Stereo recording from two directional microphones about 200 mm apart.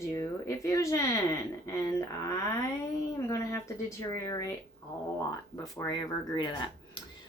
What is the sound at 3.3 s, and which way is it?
Speech, 15° left (ahead or behind).